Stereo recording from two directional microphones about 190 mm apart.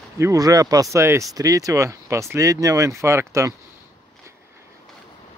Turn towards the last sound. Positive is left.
turn(degrees=-15)  # may be behind; listen again after turning